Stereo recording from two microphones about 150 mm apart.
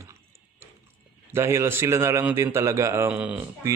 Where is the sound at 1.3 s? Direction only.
15° right (ahead or behind).